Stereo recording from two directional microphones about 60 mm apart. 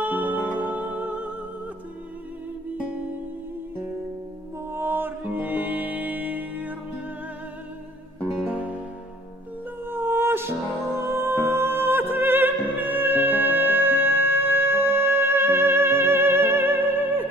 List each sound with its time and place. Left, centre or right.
0.0 s music: right
4.6 s music: right
8.5 s music: right
9.8 s music: right